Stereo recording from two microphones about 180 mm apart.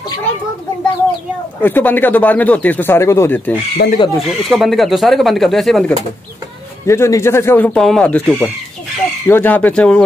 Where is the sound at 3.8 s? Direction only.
65° left (ahead or behind).